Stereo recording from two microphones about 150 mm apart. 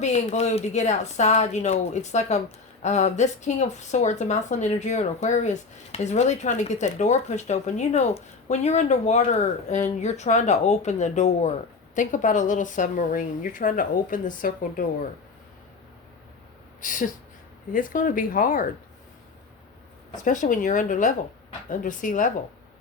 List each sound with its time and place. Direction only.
0.0 s a woman's voice: 45° left (ahead or behind); by 14.8 s 65° left (ahead or behind)
16.8 s a woman's voice: 60° left (ahead or behind)
20.2 s a woman's voice: 60° left (ahead or behind)